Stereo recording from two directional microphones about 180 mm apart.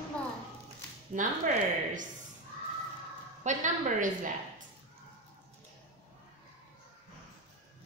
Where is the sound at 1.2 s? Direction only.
45° right (ahead or behind).